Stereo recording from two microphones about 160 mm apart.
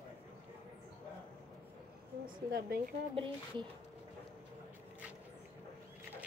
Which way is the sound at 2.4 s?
75° right (ahead or behind).